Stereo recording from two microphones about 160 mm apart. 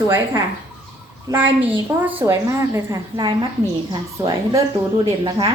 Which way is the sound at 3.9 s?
30° right (ahead or behind).